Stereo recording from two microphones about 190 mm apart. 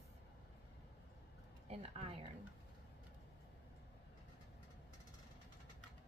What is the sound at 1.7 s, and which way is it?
Speech, 35° right (ahead or behind).